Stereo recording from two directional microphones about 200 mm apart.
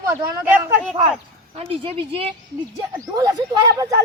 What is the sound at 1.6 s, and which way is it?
Speech, 30° right (ahead or behind).